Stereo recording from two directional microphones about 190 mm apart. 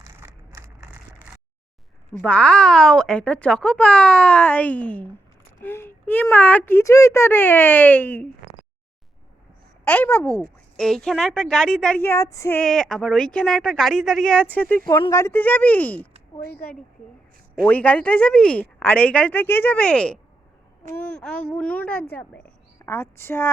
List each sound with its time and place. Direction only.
0.0 s a sound: 15° right (ahead or behind)
2.1 s a woman's voice: 5° left (ahead or behind)
9.8 s a woman's voice: 10° left (ahead or behind)